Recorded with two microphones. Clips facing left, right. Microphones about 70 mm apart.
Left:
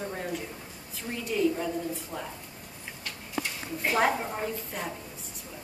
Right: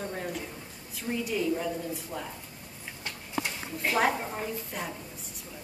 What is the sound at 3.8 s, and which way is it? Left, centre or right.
A woman's voice, centre.